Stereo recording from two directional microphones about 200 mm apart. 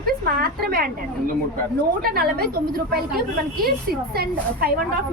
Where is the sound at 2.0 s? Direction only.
50° right (ahead or behind).